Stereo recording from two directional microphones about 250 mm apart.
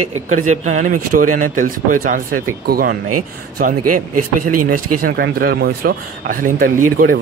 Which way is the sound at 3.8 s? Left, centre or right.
Right.